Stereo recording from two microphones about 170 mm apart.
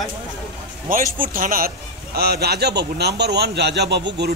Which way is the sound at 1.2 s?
55° right (ahead or behind).